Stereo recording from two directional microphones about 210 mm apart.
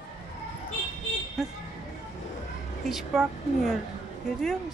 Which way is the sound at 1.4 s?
Centre (ahead or behind).